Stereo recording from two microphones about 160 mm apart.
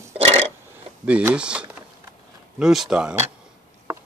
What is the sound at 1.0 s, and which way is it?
Speech, 10° right (ahead or behind).